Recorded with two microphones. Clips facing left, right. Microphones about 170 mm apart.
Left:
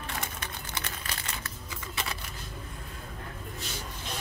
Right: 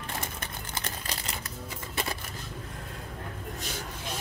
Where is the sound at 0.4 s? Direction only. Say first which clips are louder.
Right 1 dB; 40° right (ahead or behind).